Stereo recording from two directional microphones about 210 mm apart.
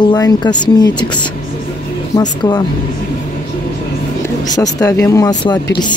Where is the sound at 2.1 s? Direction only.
20° left (ahead or behind).